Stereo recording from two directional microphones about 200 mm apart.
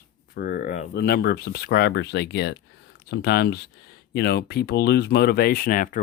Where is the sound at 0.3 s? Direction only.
50° left (ahead or behind).